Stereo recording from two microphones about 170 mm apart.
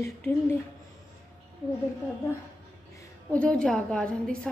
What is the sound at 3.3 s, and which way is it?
A woman's voice, 5° left (ahead or behind).